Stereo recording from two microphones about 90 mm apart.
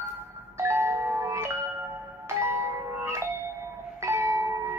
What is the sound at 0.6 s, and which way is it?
Music, 30° right (ahead or behind).